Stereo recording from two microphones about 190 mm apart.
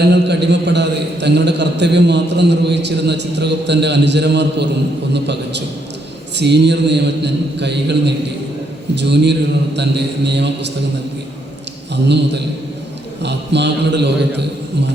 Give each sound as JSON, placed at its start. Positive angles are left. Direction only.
{"t": 0.1, "sound": "a man's voice", "side_deg": -65}
{"t": 12.0, "sound": "a man's voice", "side_deg": -65}